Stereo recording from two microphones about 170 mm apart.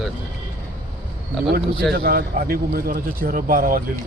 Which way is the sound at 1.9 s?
65° right (ahead or behind).